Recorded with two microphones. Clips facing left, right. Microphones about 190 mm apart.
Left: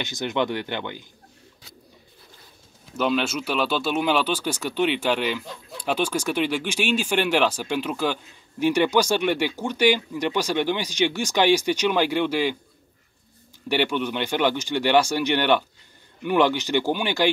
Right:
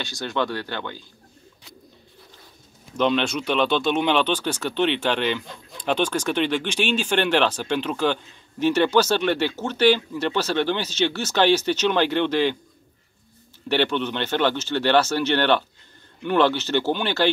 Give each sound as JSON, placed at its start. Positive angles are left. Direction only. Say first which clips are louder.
{"t": 0.0, "sound": "speech", "louder": "left 1 dB", "side_deg": 20}
{"t": 3.0, "sound": "speech", "louder": "right 2 dB", "side_deg": 5}
{"t": 13.7, "sound": "speech", "louder": "right 1 dB", "side_deg": 10}